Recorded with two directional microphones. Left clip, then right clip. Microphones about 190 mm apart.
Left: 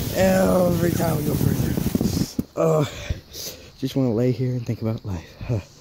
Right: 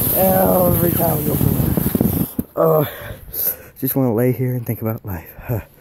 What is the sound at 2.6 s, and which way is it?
Speech, 5° right (ahead or behind).